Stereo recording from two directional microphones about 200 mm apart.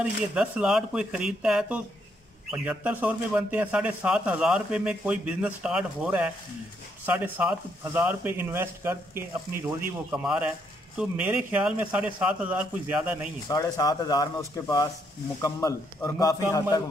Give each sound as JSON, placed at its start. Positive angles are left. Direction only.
{"t": 0.0, "sound": "a man's voice", "side_deg": -5}
{"t": 13.5, "sound": "a man's voice", "side_deg": 20}